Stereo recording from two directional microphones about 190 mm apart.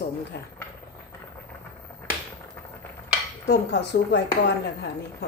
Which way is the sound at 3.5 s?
65° left (ahead or behind).